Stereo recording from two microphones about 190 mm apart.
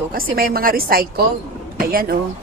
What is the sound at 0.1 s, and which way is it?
A woman's voice, 50° right (ahead or behind).